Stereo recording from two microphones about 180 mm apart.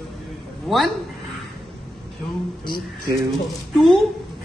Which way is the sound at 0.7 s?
Centre (ahead or behind).